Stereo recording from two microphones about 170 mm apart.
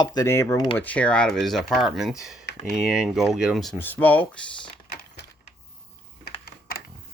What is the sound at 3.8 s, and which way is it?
Speech, 10° left (ahead or behind).